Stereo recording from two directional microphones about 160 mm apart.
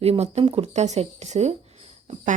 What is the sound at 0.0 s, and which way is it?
A woman's voice, 40° right (ahead or behind).